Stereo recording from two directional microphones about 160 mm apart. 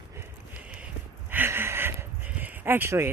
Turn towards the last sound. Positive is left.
turn(degrees=-15)  # may be behind; listen again after turning